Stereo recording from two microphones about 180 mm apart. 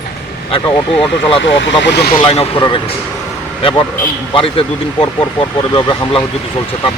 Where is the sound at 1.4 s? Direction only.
85° left; by 2.1 s 70° left (ahead or behind).